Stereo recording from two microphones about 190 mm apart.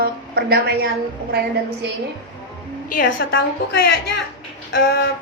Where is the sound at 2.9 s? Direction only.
50° left (ahead or behind).